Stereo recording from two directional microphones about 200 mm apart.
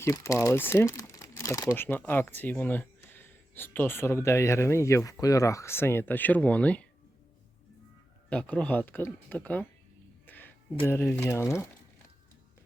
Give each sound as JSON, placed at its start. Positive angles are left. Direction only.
{"t": 0.0, "sound": "speech", "side_deg": 15}
{"t": 8.3, "sound": "speech", "side_deg": 5}
{"t": 10.2, "sound": "a sound", "side_deg": 10}
{"t": 10.8, "sound": "speech", "side_deg": 10}